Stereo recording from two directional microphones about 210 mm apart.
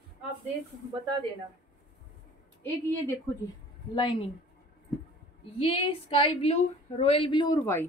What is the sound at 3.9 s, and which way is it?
Speech, 20° left (ahead or behind).